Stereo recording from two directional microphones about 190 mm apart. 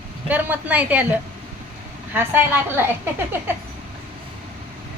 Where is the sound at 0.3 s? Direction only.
10° right (ahead or behind).